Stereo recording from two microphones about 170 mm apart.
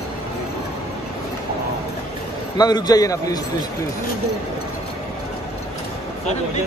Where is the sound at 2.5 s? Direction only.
25° left (ahead or behind).